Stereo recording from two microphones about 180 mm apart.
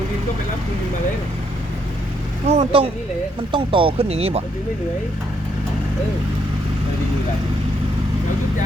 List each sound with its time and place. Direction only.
2.5 s speech: 35° right (ahead or behind)